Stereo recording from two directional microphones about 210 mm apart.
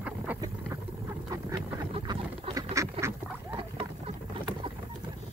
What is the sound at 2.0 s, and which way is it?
Duck, 20° right (ahead or behind).